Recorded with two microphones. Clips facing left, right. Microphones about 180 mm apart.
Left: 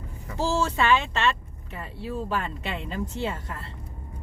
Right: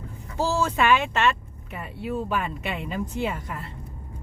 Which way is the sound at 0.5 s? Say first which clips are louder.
Right 1 dB; 15° right (ahead or behind).